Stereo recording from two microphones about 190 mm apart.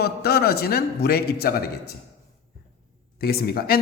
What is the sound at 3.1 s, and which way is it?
Speech, 55° left (ahead or behind).